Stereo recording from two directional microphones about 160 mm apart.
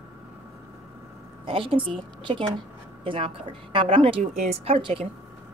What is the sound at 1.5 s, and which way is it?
A woman's voice, 35° right (ahead or behind).